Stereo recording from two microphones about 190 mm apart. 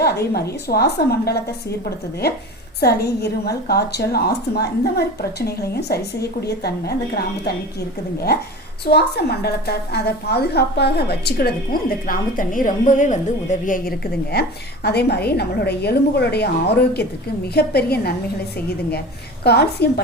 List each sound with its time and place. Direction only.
0.0 s a woman's voice: 55° left (ahead or behind)
2.8 s a woman's voice: 55° left (ahead or behind)
8.9 s a woman's voice: 60° left (ahead or behind)
19.5 s a woman's voice: 60° left (ahead or behind)